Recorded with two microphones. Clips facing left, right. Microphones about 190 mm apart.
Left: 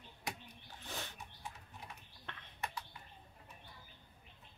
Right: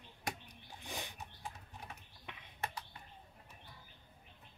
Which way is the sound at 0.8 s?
15° right (ahead or behind).